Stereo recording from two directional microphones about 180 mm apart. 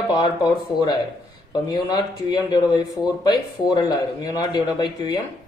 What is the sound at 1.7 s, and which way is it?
Speech, 25° left (ahead or behind).